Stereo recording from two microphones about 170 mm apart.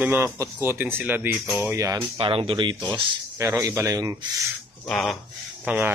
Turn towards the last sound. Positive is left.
turn(degrees=-10)  # may be behind; listen again after turning